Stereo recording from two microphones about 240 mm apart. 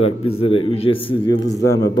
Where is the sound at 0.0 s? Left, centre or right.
Left.